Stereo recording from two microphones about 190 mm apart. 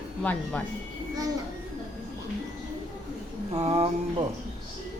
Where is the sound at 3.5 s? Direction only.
30° right (ahead or behind).